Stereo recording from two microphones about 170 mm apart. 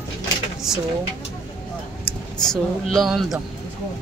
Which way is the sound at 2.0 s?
5° left (ahead or behind).